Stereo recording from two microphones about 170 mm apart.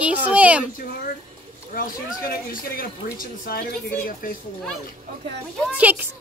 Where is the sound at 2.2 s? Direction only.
60° left (ahead or behind).